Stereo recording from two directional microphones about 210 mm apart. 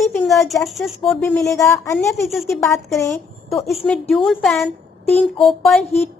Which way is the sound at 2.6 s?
15° left (ahead or behind).